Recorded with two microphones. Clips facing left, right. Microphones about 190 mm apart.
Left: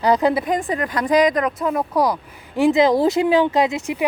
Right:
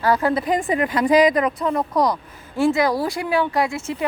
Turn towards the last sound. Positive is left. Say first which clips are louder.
# left 3 dB
turn(degrees=15)  # may be behind; listen again after turning